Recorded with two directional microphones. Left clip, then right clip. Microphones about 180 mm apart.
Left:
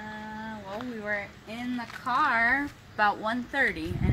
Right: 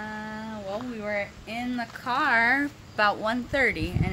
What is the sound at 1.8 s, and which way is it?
Speech, 65° right (ahead or behind).